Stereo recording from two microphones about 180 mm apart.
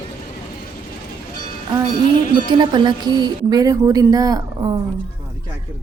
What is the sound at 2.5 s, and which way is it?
A woman's voice, 25° right (ahead or behind).